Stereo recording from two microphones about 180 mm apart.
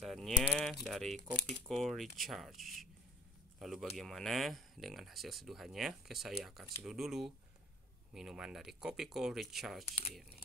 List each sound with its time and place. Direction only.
0.0 s speech: centre (ahead or behind)
9.8 s speech: 35° left (ahead or behind)